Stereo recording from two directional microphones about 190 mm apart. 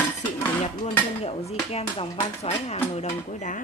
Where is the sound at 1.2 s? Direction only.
35° left (ahead or behind).